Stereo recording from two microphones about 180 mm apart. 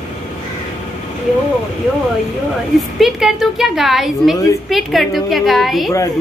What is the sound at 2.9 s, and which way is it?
A woman's voice, centre (ahead or behind).